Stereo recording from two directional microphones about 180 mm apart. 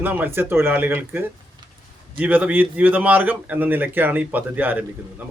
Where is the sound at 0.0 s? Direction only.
10° right (ahead or behind).